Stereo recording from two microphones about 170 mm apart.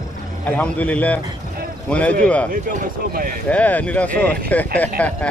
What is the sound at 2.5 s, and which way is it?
Speech, 55° right (ahead or behind).